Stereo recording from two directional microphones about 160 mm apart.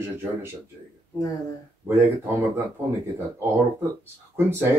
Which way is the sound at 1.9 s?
15° right (ahead or behind).